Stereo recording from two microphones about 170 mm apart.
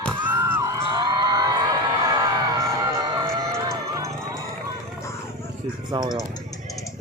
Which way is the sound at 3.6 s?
20° right (ahead or behind).